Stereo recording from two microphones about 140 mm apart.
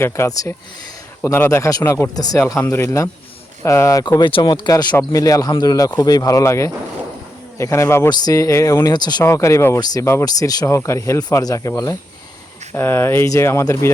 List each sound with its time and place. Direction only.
0.0 s speech: 20° left (ahead or behind)
4.2 s speech: 35° left (ahead or behind)
12.7 s speech: 15° left (ahead or behind)